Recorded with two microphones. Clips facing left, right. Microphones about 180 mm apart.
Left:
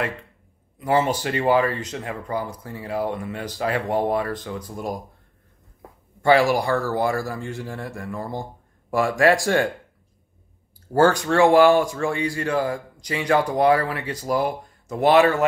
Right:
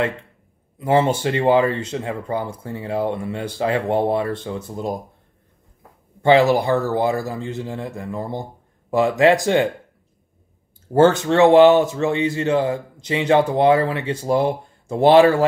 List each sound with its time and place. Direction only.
0.7 s speech: 25° right (ahead or behind)
6.2 s speech: 20° right (ahead or behind)
10.9 s speech: 25° right (ahead or behind)